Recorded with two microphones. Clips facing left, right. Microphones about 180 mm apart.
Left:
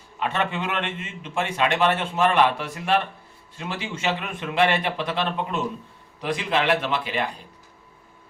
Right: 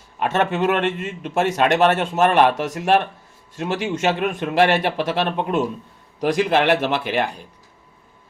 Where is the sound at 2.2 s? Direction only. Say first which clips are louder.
Right 4 dB; 60° right (ahead or behind).